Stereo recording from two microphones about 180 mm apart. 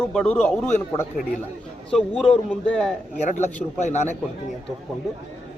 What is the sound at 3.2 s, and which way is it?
Speech, 40° left (ahead or behind).